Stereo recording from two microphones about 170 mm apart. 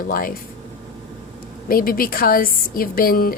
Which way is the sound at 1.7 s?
60° left (ahead or behind).